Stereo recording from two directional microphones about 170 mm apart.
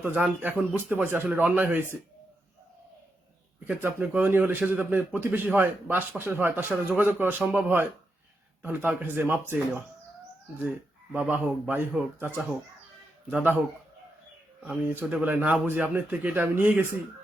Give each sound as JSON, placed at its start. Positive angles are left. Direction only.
{"t": 0.0, "sound": "a man's voice", "side_deg": -10}
{"t": 3.7, "sound": "a man's voice", "side_deg": -10}
{"t": 11.1, "sound": "a man's voice", "side_deg": -5}
{"t": 14.6, "sound": "a man's voice", "side_deg": -5}